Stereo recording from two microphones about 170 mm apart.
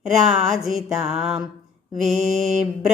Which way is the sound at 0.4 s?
Centre (ahead or behind).